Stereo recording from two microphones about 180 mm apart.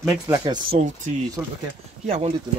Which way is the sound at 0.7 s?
40° right (ahead or behind).